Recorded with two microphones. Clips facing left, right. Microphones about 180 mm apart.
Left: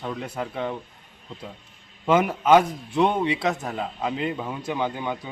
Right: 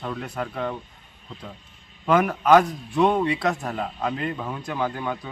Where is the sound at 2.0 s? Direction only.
20° left (ahead or behind).